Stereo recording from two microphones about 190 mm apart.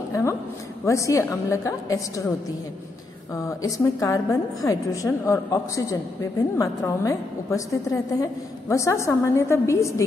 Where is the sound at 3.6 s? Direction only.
15° left (ahead or behind).